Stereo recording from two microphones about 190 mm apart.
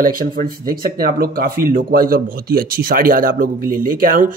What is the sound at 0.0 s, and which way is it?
Speech, 45° right (ahead or behind).